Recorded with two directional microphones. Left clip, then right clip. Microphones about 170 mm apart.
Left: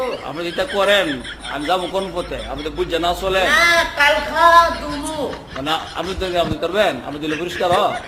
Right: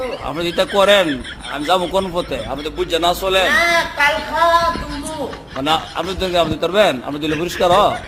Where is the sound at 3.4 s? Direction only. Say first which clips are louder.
Left 3 dB; 10° left (ahead or behind).